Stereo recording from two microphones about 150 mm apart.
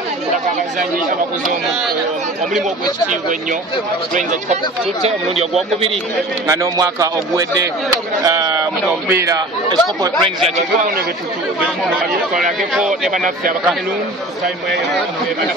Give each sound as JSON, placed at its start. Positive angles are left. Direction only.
{"t": 5.0, "sound": "speech", "side_deg": -45}
{"t": 6.4, "sound": "speech", "side_deg": -20}
{"t": 9.7, "sound": "speech", "side_deg": -30}
{"t": 12.7, "sound": "speech", "side_deg": 0}